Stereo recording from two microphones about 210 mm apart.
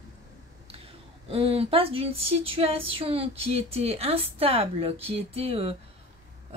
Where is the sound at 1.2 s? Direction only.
25° right (ahead or behind).